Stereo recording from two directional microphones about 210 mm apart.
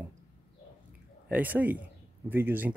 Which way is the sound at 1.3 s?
5° right (ahead or behind).